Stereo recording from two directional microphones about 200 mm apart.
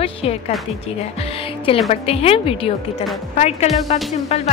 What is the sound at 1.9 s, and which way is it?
Speech, 30° left (ahead or behind).